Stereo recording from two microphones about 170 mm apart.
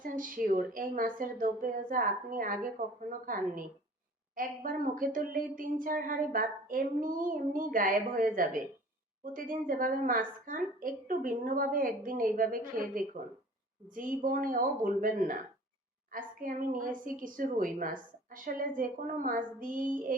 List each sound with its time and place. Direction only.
0.0 s a woman's voice: 55° right (ahead or behind)